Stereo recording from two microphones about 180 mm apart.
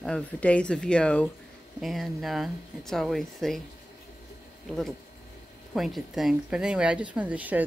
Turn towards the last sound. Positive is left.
turn(degrees=-10)  # may be behind; listen again after turning